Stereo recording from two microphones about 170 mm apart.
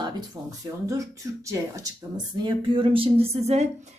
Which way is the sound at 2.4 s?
30° right (ahead or behind).